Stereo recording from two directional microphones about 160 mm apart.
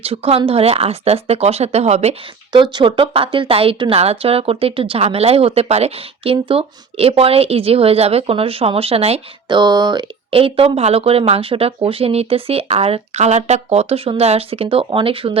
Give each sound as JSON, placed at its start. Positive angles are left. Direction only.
{"t": 0.0, "sound": "a woman's voice", "side_deg": -40}
{"t": 2.5, "sound": "a woman's voice", "side_deg": -30}